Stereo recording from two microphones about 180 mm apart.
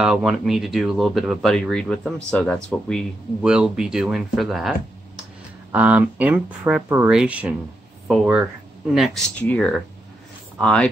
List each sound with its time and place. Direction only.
0.0 s speech: centre (ahead or behind)